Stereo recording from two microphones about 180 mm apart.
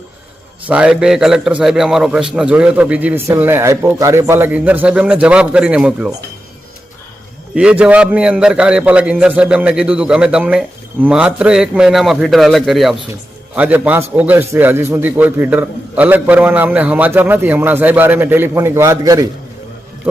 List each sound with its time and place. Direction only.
0.7 s a man's voice: 5° right (ahead or behind)
7.5 s a man's voice: 5° right (ahead or behind)